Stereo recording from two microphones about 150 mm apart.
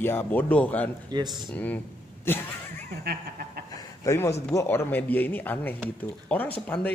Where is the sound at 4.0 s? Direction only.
20° left (ahead or behind).